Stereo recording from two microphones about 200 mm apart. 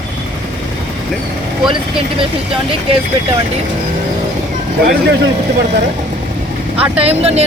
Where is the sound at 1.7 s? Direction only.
25° right (ahead or behind).